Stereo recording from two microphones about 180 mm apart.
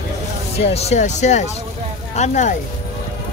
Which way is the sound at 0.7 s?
40° left (ahead or behind).